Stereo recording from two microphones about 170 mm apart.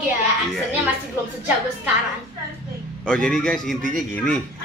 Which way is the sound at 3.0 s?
5° left (ahead or behind).